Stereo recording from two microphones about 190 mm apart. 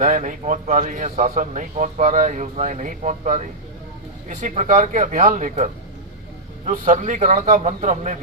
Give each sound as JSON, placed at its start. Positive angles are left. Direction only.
{"t": 0.0, "sound": "speech", "side_deg": -40}